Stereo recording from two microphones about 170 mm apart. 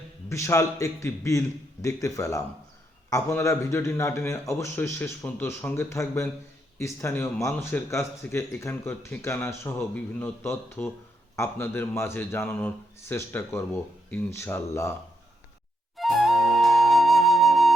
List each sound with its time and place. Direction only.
0.3 s a man's voice: 15° left (ahead or behind)
16.0 s music: centre (ahead or behind)